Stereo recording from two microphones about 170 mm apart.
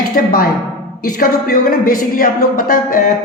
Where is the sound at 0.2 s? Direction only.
55° left (ahead or behind).